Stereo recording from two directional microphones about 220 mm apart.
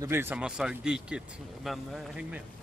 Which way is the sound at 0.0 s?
10° right (ahead or behind).